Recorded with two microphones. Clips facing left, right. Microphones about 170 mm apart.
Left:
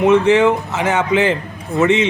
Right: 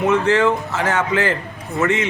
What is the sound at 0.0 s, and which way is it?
A man's voice, 20° left (ahead or behind).